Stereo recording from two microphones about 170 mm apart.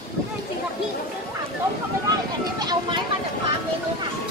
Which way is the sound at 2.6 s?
25° right (ahead or behind).